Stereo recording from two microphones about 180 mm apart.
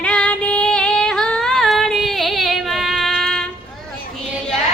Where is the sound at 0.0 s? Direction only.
5° left (ahead or behind).